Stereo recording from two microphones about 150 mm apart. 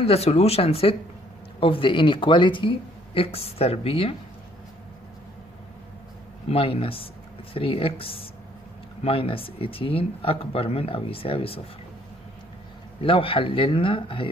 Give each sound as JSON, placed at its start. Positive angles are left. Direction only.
{"t": 0.0, "sound": "speech", "side_deg": 45}
{"t": 6.5, "sound": "speech", "side_deg": 35}
{"t": 13.0, "sound": "speech", "side_deg": 35}